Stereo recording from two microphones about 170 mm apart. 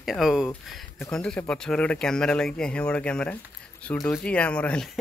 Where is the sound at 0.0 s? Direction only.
Centre (ahead or behind).